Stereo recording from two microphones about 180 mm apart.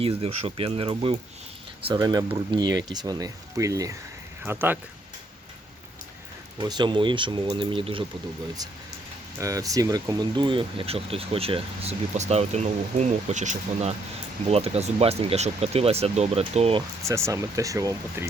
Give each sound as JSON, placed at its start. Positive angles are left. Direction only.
{"t": 0.0, "sound": "speech", "side_deg": -35}
{"t": 6.6, "sound": "speech", "side_deg": -25}
{"t": 9.4, "sound": "speech", "side_deg": -20}
{"t": 17.0, "sound": "speech", "side_deg": -15}